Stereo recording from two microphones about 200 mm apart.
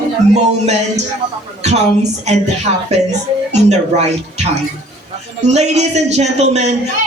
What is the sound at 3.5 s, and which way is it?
Speech, 35° right (ahead or behind).